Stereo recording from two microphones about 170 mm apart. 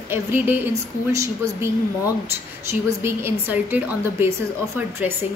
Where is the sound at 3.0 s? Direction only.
10° right (ahead or behind).